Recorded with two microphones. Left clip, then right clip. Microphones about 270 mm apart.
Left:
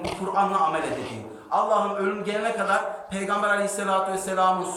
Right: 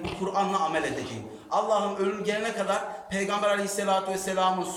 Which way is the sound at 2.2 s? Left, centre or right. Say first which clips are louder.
Left 3 dB; right.